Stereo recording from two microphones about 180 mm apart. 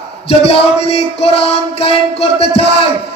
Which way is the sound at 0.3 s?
30° left (ahead or behind).